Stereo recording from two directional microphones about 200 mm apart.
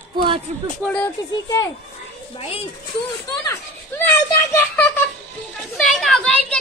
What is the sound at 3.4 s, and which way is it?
Children playing, 10° left (ahead or behind).